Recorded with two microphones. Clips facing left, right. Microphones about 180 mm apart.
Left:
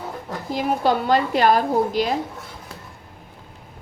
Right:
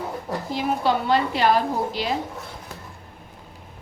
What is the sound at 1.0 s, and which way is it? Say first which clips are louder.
A woman's voice: left 3 dB; 45° left (ahead or behind).